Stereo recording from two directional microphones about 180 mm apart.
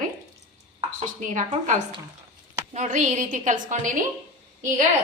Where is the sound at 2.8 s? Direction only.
45° right (ahead or behind).